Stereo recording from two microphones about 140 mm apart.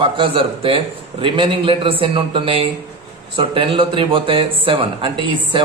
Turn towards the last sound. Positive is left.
turn(degrees=-35)  # may be behind; listen again after turning